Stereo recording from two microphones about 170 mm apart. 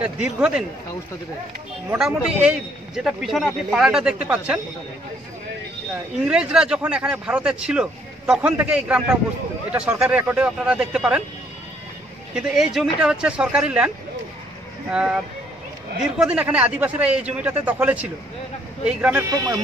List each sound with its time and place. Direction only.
0.0 s a man's voice: 5° right (ahead or behind)
2.0 s a man's voice: 5° right (ahead or behind)
6.2 s speech: 5° right (ahead or behind)
12.4 s a man's voice: centre (ahead or behind)
19.3 s speech: 20° right (ahead or behind)